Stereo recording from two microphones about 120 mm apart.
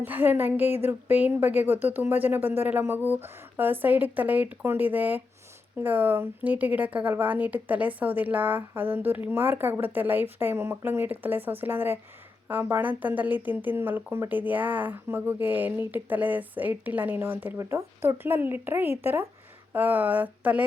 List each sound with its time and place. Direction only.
0.0 s speech: 15° right (ahead or behind)